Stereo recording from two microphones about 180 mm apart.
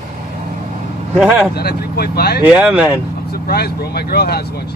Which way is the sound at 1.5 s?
60° left (ahead or behind).